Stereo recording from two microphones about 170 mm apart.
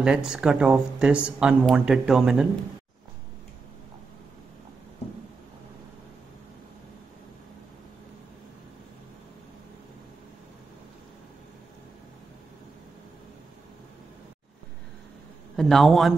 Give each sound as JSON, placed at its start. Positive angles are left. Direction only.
{"t": 0.0, "sound": "speech", "side_deg": -5}
{"t": 15.5, "sound": "a man's voice", "side_deg": 0}